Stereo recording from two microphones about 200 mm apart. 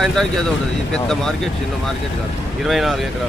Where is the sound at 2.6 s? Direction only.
Centre (ahead or behind).